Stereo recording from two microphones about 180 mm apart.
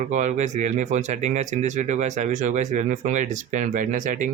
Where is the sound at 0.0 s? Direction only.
40° right (ahead or behind).